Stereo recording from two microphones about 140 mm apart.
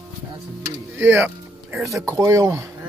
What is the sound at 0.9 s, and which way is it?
Speech, 15° right (ahead or behind).